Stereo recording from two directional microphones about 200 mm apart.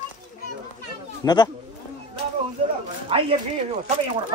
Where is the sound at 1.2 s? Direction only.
20° left (ahead or behind).